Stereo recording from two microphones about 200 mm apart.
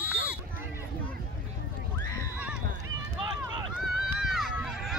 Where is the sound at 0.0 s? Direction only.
5° right (ahead or behind).